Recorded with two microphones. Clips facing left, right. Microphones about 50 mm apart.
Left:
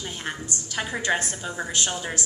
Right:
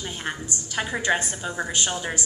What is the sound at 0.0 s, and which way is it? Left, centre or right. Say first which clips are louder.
A woman's voice: right 1 dB; centre.